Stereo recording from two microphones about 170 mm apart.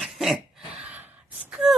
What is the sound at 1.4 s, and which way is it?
Gasp, 5° right (ahead or behind).